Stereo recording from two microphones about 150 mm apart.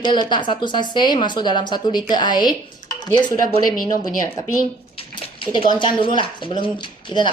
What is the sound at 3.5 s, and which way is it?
A woman's voice, 65° left (ahead or behind).